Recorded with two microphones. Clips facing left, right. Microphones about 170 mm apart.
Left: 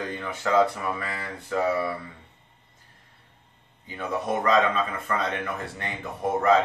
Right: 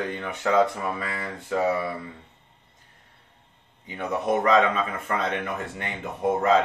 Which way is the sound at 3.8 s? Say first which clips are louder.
Right 3 dB; 20° right (ahead or behind).